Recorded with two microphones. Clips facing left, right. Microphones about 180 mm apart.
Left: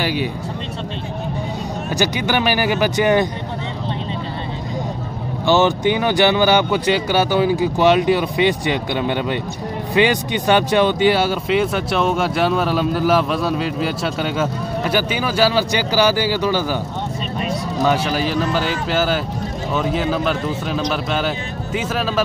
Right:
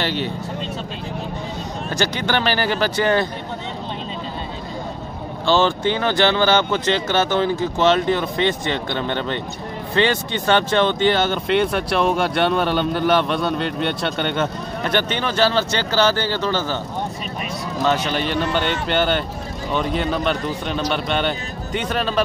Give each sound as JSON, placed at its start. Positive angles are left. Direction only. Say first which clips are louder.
{"t": 0.0, "sound": "speech", "louder": "left 2 dB", "side_deg": 10}
{"t": 1.9, "sound": "speech", "louder": "left 2 dB", "side_deg": 10}
{"t": 5.5, "sound": "speech", "louder": "left 2 dB", "side_deg": 15}
{"t": 17.8, "sound": "a man's voice", "louder": "left 2 dB", "side_deg": 10}